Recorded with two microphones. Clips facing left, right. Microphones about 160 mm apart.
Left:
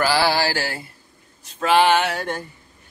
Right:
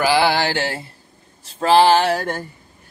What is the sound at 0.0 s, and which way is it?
Speech, 20° right (ahead or behind).